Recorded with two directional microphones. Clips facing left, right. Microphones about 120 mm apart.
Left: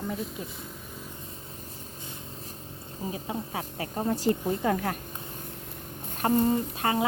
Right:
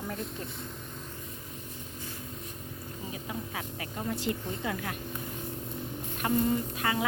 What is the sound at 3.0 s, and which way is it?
Speech, 30° left (ahead or behind).